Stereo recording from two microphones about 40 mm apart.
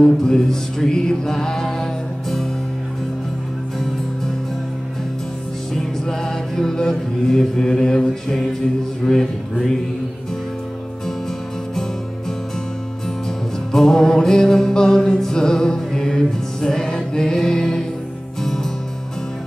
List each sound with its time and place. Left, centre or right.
0.0 s music: centre
5.8 s music: centre
13.7 s music: centre